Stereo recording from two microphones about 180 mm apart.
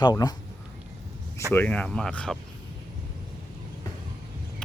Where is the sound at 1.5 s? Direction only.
10° left (ahead or behind).